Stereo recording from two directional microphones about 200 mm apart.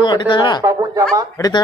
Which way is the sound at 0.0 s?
25° left (ahead or behind).